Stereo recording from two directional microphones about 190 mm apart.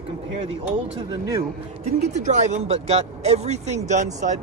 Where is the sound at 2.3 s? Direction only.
35° right (ahead or behind).